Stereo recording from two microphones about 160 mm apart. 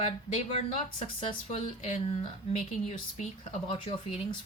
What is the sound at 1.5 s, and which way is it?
Speech, 50° left (ahead or behind).